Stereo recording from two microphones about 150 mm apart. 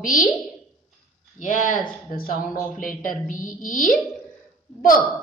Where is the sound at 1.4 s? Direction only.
60° left (ahead or behind).